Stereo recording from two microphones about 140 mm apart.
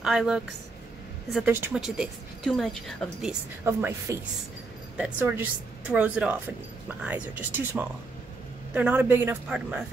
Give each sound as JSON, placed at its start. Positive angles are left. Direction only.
{"t": 0.0, "sound": "a woman's voice", "side_deg": -5}
{"t": 1.8, "sound": "a woman's voice", "side_deg": 0}
{"t": 3.6, "sound": "speech", "side_deg": -15}
{"t": 5.2, "sound": "speech", "side_deg": -15}